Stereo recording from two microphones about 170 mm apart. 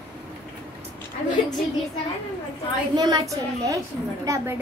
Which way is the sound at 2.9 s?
20° right (ahead or behind).